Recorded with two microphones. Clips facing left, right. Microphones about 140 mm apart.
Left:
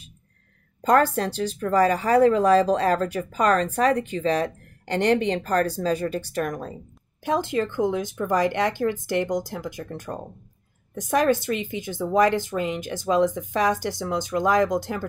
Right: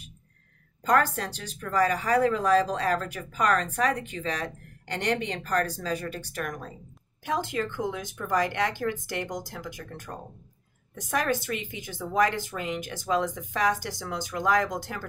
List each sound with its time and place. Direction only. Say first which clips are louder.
0.8 s speech: left 5 dB; 30° left (ahead or behind)